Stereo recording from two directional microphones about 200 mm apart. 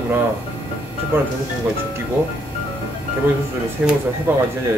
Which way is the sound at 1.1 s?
10° right (ahead or behind).